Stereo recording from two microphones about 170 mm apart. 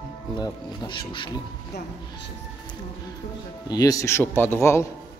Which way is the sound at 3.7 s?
20° left (ahead or behind).